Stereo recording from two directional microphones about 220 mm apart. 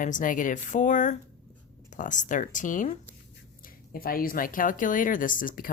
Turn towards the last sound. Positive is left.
turn(degrees=40)  # may be behind; listen again after turning